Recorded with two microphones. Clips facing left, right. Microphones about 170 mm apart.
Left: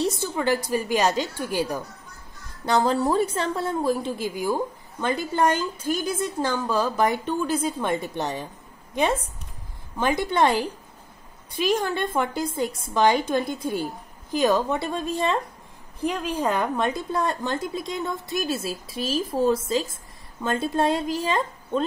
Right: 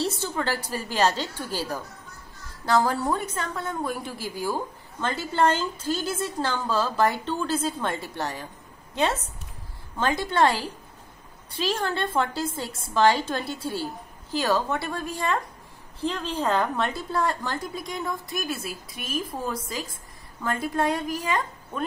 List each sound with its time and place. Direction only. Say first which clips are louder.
0.0 s a sound: left 3 dB; 15° left (ahead or behind)
0.7 s a woman's voice: left 2 dB; 15° left (ahead or behind)
9.9 s a woman's voice: left 1 dB; 15° left (ahead or behind)